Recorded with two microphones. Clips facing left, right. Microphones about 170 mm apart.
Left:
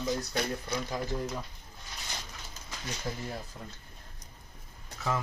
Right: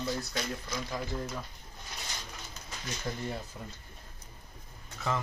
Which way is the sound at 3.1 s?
5° left (ahead or behind).